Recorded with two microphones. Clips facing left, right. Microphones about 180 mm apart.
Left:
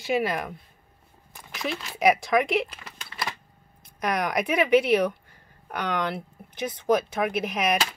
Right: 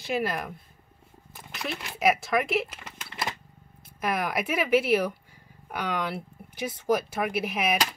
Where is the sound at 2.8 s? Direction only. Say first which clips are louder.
Even; 20° right (ahead or behind).